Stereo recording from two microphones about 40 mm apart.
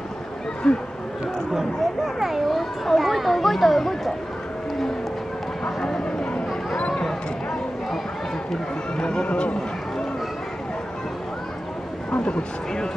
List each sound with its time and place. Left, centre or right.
0.7 s speech: left
2.1 s a child's voice: centre
5.8 s vehicle: centre
6.9 s a sound: centre
8.5 s speech: centre
12.2 s speech: centre